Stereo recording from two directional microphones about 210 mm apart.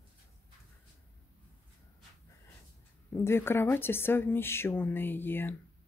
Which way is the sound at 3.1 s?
10° left (ahead or behind).